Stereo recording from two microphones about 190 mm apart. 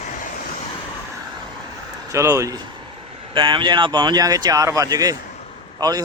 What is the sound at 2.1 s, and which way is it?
A man's voice, 15° right (ahead or behind).